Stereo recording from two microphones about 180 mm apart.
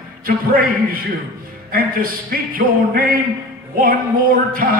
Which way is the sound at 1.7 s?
55° right (ahead or behind).